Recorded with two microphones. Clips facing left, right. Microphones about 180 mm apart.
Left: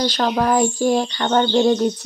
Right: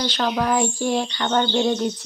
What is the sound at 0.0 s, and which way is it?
Child singing, 40° left (ahead or behind).